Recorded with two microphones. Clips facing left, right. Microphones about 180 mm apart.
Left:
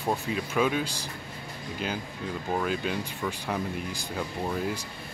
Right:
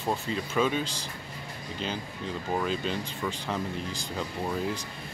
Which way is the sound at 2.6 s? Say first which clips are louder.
Left 1 dB; 5° left (ahead or behind).